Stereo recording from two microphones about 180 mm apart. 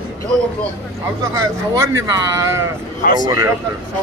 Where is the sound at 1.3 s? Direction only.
15° right (ahead or behind).